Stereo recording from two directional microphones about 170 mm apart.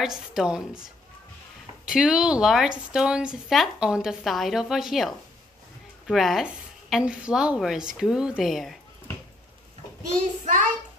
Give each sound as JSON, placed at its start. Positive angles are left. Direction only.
{"t": 0.0, "sound": "a woman's voice", "side_deg": -5}
{"t": 1.9, "sound": "a woman's voice", "side_deg": -5}
{"t": 10.4, "sound": "child singing", "side_deg": -50}